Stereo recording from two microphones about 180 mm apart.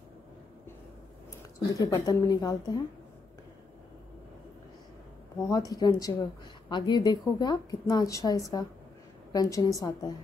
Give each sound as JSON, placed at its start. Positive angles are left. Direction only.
{"t": 1.8, "sound": "a woman's voice", "side_deg": 15}
{"t": 5.5, "sound": "a woman's voice", "side_deg": 20}